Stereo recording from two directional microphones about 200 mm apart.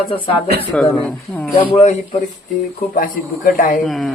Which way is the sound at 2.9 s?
45° left (ahead or behind).